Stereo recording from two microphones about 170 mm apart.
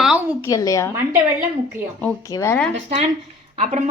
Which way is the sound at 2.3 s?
15° left (ahead or behind).